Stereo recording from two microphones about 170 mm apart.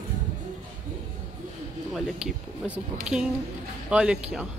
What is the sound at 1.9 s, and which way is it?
Speech, 5° right (ahead or behind).